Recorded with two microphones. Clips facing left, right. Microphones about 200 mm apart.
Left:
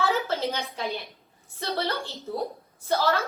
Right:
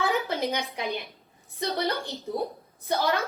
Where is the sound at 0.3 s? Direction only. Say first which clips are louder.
Even; 15° right (ahead or behind).